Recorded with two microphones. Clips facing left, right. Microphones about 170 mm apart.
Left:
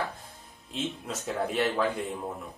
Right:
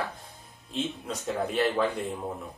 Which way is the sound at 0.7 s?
Centre (ahead or behind).